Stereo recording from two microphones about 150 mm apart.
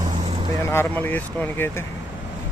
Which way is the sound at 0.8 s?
10° left (ahead or behind).